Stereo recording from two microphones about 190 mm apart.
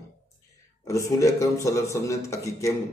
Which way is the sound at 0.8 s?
15° left (ahead or behind).